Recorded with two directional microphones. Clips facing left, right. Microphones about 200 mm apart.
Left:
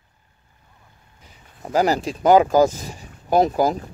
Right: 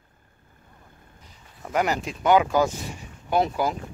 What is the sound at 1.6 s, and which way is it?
Speech, 35° left (ahead or behind).